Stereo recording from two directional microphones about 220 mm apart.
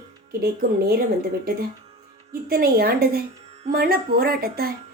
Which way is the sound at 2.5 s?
45° right (ahead or behind).